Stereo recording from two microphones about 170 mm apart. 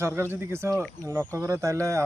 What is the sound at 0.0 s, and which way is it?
Speech, 15° right (ahead or behind).